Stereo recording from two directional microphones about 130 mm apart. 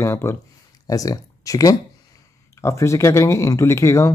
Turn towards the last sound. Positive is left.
turn(degrees=25)  # may be behind; listen again after turning